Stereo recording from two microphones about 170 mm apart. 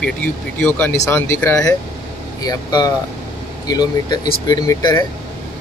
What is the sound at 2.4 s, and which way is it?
Speech, 20° left (ahead or behind).